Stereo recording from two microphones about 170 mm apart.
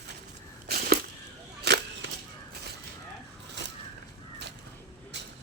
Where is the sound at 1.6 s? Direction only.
90° right.